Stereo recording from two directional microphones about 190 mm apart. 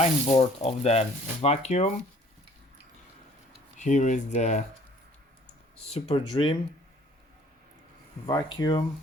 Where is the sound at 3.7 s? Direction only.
40° left (ahead or behind).